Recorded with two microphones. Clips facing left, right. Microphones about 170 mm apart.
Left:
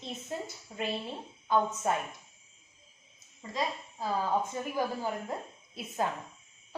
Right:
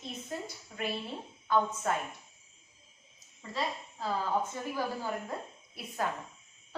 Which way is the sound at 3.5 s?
15° left (ahead or behind).